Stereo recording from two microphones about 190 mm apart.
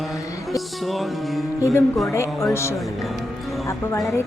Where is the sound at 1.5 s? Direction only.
15° left (ahead or behind).